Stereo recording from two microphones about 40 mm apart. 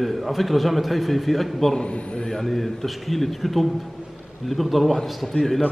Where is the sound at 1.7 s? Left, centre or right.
Left.